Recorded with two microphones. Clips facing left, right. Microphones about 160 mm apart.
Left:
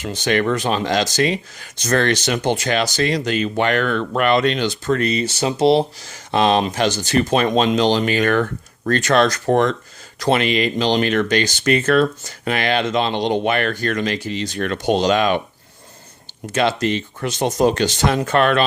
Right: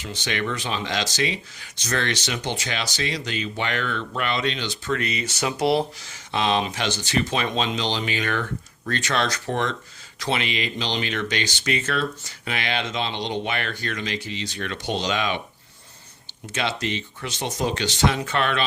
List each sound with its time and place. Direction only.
0.0 s speech: 45° left (ahead or behind); by 6.1 s 25° left (ahead or behind)
6.1 s speech: 40° left (ahead or behind)
16.5 s speech: 45° left (ahead or behind)